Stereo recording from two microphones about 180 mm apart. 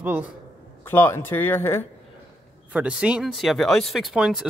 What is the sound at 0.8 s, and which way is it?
A man's voice, 10° left (ahead or behind).